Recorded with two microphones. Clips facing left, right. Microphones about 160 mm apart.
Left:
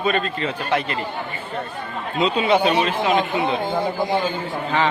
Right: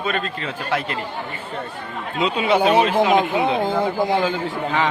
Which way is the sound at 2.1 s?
10° right (ahead or behind).